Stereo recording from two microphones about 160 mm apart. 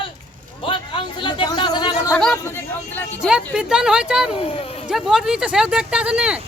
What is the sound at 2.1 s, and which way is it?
Speech, 10° left (ahead or behind).